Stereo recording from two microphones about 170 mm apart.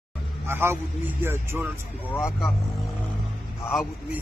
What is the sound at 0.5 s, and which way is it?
Speech, 15° right (ahead or behind).